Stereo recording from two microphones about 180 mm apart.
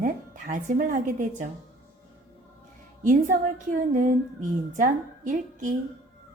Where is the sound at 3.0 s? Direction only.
45° right (ahead or behind).